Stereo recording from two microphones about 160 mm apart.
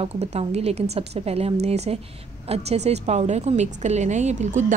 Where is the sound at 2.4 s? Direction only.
40° right (ahead or behind).